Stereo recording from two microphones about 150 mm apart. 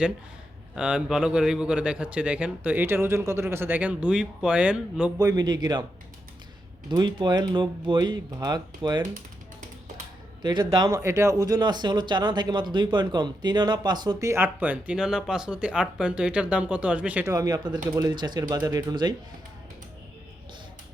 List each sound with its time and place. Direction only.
0.8 s a man's voice: 5° right (ahead or behind)
5.1 s speech: 25° right (ahead or behind)
6.9 s speech: 30° right (ahead or behind)
10.4 s speech: 30° right (ahead or behind); by 17.3 s 10° right (ahead or behind)
17.3 s speech: 25° right (ahead or behind)